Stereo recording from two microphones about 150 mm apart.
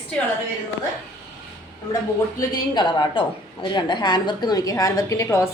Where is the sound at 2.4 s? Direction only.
25° left (ahead or behind).